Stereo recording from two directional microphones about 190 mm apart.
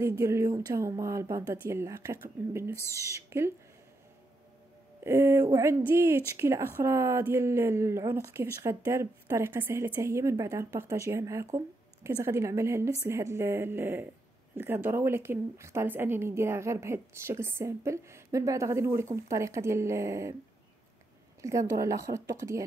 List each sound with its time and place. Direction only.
0.0 s a woman's voice: 15° right (ahead or behind)
5.0 s a woman's voice: 10° right (ahead or behind)
21.4 s a woman's voice: 15° right (ahead or behind)